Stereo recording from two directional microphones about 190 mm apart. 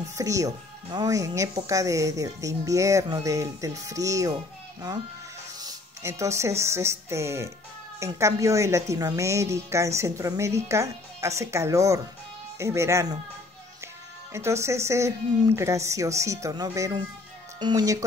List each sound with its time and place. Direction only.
0.1 s a woman's voice: 15° right (ahead or behind)
5.6 s a woman's voice: 15° right (ahead or behind)
14.3 s a woman's voice: 15° right (ahead or behind)